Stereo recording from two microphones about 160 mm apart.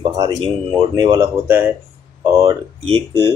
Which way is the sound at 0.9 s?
25° right (ahead or behind).